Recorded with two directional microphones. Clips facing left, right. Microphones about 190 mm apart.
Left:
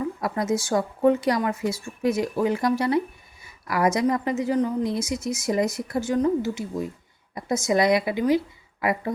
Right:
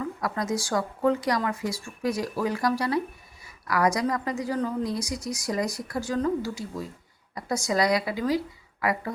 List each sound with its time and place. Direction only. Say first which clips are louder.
0.0 s a woman's voice: left 3 dB; 25° left (ahead or behind)